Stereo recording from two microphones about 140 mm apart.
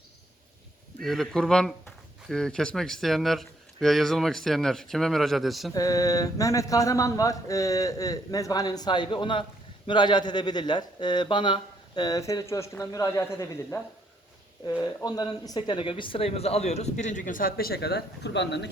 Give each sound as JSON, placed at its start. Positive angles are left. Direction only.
{"t": 1.0, "sound": "speech", "side_deg": 0}
{"t": 5.7, "sound": "speech", "side_deg": 25}
{"t": 14.8, "sound": "speech", "side_deg": 30}